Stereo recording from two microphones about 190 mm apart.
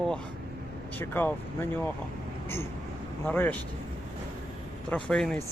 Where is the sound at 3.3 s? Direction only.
10° left (ahead or behind).